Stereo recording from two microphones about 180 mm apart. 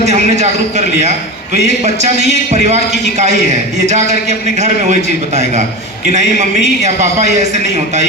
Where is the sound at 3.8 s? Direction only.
40° right (ahead or behind).